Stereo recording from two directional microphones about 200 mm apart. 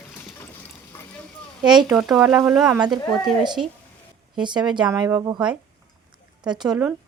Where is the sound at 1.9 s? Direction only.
5° right (ahead or behind).